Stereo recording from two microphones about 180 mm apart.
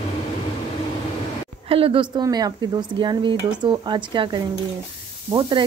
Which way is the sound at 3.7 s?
25° right (ahead or behind).